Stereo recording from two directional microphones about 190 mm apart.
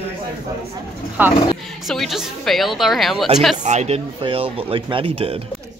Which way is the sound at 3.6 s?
35° right (ahead or behind).